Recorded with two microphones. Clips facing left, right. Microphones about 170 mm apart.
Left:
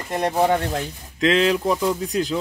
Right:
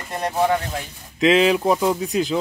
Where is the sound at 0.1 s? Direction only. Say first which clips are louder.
Left 1 dB; 15° left (ahead or behind).